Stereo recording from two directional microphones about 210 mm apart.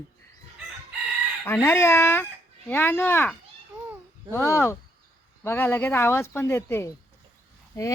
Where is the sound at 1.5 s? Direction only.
10° left (ahead or behind).